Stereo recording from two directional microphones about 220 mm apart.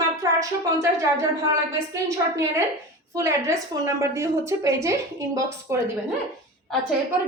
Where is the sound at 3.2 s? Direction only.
15° right (ahead or behind).